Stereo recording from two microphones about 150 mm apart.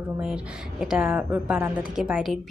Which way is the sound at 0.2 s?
5° right (ahead or behind).